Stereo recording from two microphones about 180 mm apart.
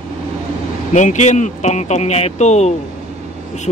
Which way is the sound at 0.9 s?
40° left (ahead or behind).